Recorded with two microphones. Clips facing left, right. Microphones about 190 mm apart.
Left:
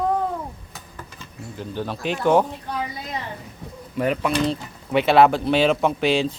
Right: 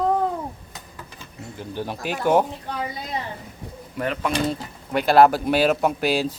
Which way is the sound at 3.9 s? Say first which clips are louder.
Left 3 dB; 5° left (ahead or behind).